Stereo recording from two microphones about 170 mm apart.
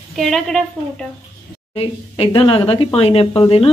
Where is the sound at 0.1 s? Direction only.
Centre (ahead or behind).